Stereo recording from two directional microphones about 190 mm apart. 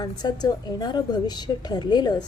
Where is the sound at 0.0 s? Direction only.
20° left (ahead or behind).